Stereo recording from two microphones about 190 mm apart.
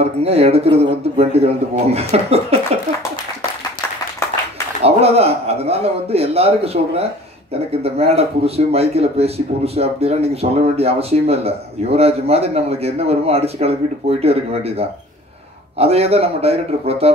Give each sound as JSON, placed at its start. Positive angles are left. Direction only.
{"t": 0.0, "sound": "speech", "side_deg": -30}
{"t": 4.8, "sound": "speech", "side_deg": -30}